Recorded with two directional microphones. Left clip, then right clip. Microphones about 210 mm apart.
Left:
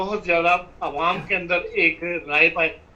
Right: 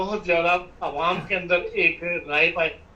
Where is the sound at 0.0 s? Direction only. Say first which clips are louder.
Left 2 dB; 15° left (ahead or behind).